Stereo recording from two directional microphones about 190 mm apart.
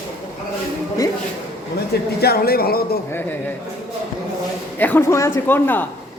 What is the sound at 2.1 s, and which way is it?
Speech, 55° left (ahead or behind).